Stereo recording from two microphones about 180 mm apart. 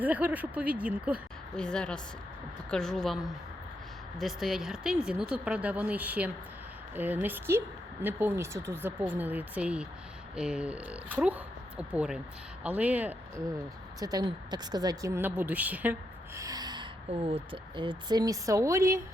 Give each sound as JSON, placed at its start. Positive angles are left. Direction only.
{"t": 0.0, "sound": "speech", "side_deg": -10}
{"t": 1.5, "sound": "speech", "side_deg": 5}
{"t": 14.0, "sound": "speech", "side_deg": -20}
{"t": 17.1, "sound": "speech", "side_deg": -30}